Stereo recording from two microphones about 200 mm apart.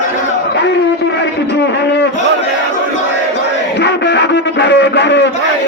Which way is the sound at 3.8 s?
60° left (ahead or behind).